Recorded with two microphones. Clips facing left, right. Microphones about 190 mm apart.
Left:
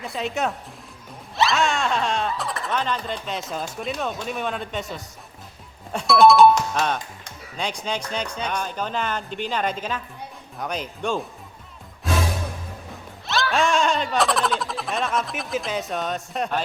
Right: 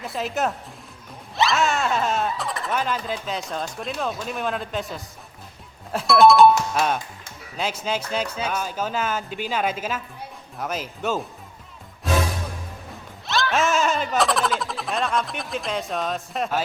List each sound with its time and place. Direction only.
0.0 s speech: centre (ahead or behind)
13.2 s speech: centre (ahead or behind)